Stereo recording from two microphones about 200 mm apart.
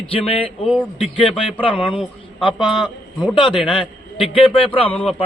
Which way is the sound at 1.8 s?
25° left (ahead or behind).